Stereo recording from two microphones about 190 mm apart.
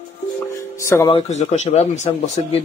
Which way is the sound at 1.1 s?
35° left (ahead or behind).